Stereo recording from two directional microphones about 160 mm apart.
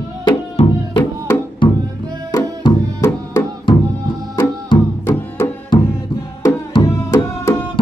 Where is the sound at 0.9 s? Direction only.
30° left (ahead or behind).